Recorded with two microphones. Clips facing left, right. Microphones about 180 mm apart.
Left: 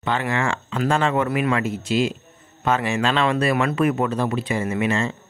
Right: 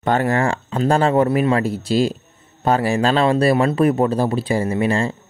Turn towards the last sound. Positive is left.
turn(degrees=-35)  # may be behind; listen again after turning